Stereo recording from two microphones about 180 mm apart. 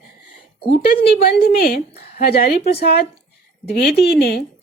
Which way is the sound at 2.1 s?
60° left (ahead or behind).